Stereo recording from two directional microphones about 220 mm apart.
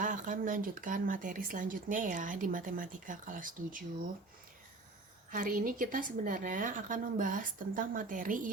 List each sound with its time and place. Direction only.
0.0 s speech: 35° right (ahead or behind)
5.3 s speech: 40° right (ahead or behind)